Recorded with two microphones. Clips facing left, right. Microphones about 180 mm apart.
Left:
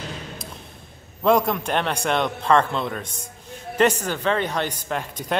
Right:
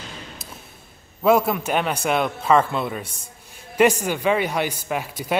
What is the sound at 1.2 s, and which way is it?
A man's voice, 5° right (ahead or behind).